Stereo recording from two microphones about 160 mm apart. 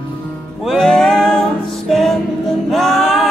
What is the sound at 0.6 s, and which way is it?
Music, centre (ahead or behind).